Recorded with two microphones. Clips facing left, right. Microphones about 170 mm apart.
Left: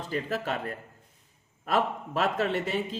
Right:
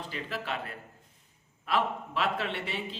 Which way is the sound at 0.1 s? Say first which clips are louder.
Left 7 dB; 45° left (ahead or behind).